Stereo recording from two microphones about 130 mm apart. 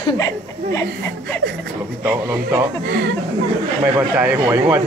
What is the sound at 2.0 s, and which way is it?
Speech, 20° right (ahead or behind).